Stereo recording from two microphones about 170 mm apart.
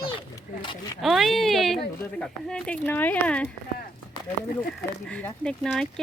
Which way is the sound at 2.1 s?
5° left (ahead or behind).